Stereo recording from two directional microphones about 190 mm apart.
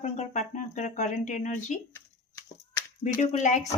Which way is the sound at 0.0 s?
40° left (ahead or behind).